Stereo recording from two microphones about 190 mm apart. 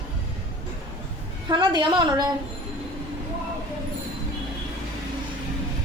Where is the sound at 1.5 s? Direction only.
25° right (ahead or behind).